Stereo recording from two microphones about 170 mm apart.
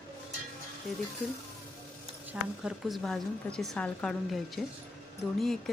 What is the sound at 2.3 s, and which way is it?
A woman's voice, 5° right (ahead or behind).